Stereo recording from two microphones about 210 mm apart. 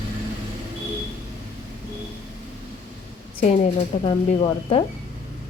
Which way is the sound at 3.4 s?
30° left (ahead or behind).